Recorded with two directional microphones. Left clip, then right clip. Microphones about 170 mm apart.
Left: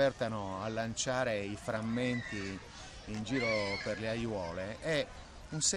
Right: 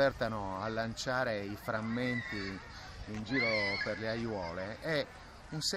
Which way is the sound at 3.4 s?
15° left (ahead or behind).